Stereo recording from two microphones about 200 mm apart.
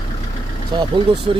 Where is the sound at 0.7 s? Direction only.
25° right (ahead or behind).